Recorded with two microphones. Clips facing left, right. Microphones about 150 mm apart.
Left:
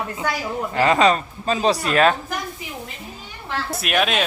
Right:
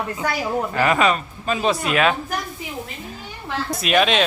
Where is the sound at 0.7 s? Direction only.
25° left (ahead or behind).